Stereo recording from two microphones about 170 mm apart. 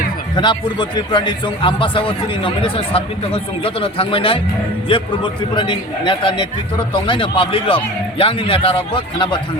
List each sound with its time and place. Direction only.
0.3 s a man's voice: 25° left (ahead or behind)